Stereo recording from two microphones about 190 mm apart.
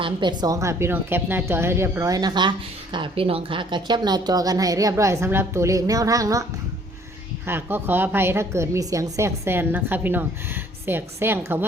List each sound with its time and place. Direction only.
0.0 s a woman's voice: 25° right (ahead or behind)
7.4 s a woman's voice: 10° right (ahead or behind)